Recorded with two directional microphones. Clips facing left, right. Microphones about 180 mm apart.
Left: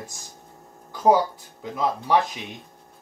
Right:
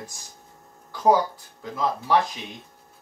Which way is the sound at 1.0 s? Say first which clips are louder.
Left 1 dB; 15° left (ahead or behind).